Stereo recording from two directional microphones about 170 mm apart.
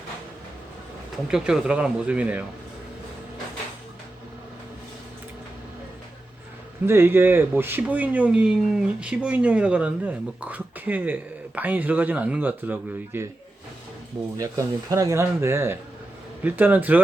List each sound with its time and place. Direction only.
1.3 s speech: 5° right (ahead or behind)
6.8 s speech: 15° right (ahead or behind)
14.3 s speech: 20° right (ahead or behind)